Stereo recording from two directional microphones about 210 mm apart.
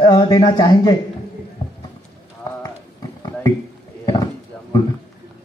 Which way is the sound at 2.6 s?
15° left (ahead or behind).